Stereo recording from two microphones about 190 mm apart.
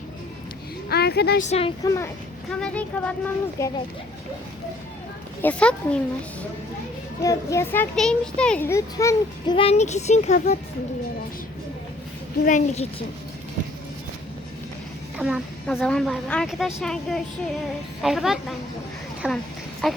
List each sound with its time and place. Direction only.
0.9 s a woman's voice: 60° left (ahead or behind)
1.4 s child singing: 35° left (ahead or behind)
1.8 s a child's voice: 15° left (ahead or behind)
2.5 s a child's voice: 5° left (ahead or behind)
5.4 s a woman's voice: 5° left (ahead or behind)
7.2 s a child's voice: 15° left (ahead or behind)
9.6 s child singing: 35° left (ahead or behind)
12.5 s child singing: 40° left (ahead or behind)
15.2 s a woman's voice: 5° right (ahead or behind)